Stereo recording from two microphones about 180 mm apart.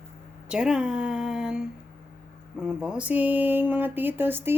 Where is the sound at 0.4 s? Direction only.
5° right (ahead or behind).